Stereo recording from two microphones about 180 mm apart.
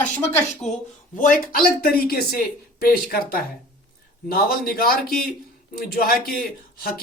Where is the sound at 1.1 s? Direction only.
50° left (ahead or behind).